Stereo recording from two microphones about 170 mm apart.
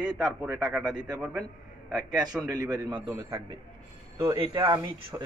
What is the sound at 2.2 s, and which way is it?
A man's voice, 25° right (ahead or behind).